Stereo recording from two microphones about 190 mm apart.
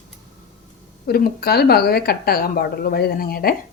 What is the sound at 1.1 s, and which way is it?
Speech, 55° left (ahead or behind).